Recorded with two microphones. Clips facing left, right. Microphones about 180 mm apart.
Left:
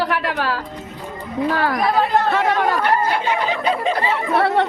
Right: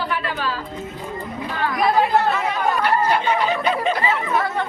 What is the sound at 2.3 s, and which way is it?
Chatter, 90° left.